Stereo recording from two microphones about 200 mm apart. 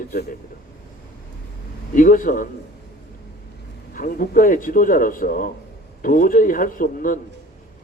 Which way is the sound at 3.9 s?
45° left (ahead or behind).